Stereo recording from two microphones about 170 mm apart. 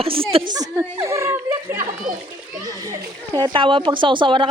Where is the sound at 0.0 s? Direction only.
30° right (ahead or behind).